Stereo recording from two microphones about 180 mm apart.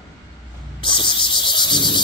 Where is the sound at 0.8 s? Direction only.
25° left (ahead or behind).